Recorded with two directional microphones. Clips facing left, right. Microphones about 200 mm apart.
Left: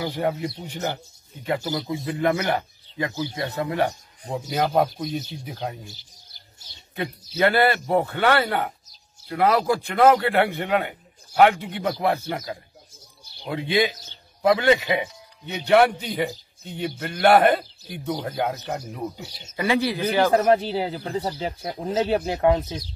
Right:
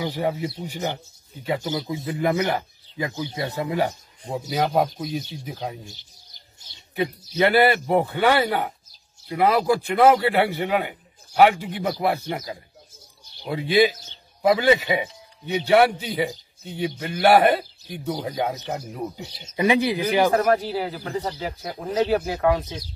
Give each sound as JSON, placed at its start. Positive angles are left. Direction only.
{"t": 0.2, "sound": "a man's voice", "side_deg": -5}
{"t": 3.5, "sound": "a man's voice", "side_deg": -10}
{"t": 7.0, "sound": "a man's voice", "side_deg": -10}
{"t": 13.5, "sound": "a man's voice", "side_deg": -10}
{"t": 19.5, "sound": "a man's voice", "side_deg": -15}
{"t": 20.3, "sound": "speech", "side_deg": 25}